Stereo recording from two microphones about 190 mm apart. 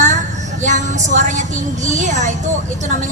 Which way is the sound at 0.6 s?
40° right (ahead or behind).